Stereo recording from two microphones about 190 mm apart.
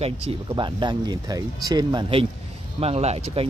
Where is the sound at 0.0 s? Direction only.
30° right (ahead or behind).